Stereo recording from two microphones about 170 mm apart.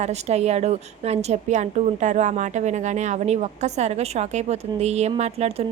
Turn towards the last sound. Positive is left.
turn(degrees=-40)  # may be behind; listen again after turning